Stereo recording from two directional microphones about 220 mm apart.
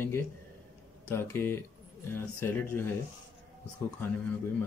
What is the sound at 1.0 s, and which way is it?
Speech, 10° left (ahead or behind).